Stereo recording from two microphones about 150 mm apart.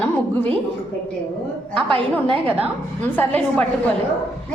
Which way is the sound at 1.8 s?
35° right (ahead or behind).